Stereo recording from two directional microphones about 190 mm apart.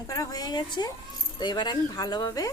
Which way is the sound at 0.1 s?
20° left (ahead or behind).